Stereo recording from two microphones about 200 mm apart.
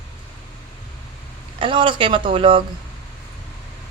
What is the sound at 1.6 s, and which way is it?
Speech, 25° right (ahead or behind).